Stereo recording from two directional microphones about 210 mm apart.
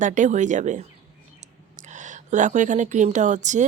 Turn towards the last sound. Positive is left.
turn(degrees=-35)  # may be behind; listen again after turning